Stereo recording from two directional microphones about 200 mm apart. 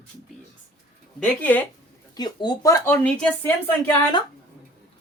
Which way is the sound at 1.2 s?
10° left (ahead or behind).